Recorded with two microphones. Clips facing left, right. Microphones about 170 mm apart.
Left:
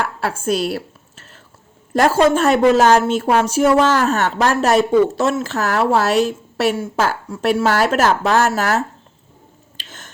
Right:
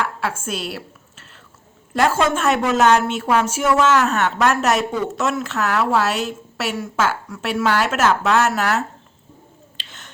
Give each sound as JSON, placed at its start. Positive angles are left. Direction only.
{"t": 0.2, "sound": "a woman's voice", "side_deg": 35}
{"t": 1.9, "sound": "a woman's voice", "side_deg": 40}
{"t": 9.7, "sound": "drip", "side_deg": 45}